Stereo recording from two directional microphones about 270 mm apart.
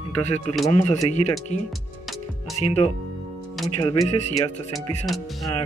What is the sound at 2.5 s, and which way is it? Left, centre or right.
Speech, left.